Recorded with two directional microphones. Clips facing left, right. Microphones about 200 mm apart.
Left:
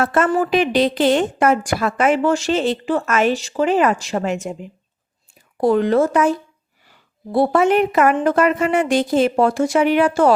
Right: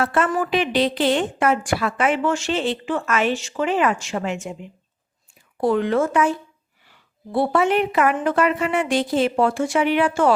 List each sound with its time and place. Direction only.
0.0 s a woman's voice: 45° left (ahead or behind)